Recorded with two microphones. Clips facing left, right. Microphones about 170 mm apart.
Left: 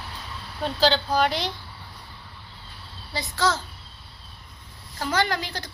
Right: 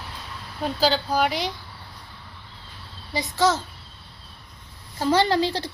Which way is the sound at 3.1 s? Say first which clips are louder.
Right 4 dB; 20° right (ahead or behind).